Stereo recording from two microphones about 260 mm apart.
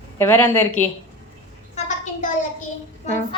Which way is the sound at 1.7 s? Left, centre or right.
Left.